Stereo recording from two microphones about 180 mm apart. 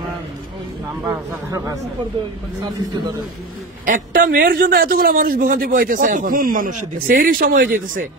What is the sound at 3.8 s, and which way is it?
A man's voice, 45° right (ahead or behind).